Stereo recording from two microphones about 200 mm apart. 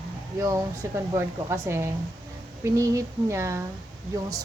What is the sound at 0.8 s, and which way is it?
A woman's voice, 15° right (ahead or behind).